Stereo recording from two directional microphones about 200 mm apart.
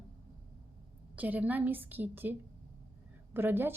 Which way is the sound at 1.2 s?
10° right (ahead or behind).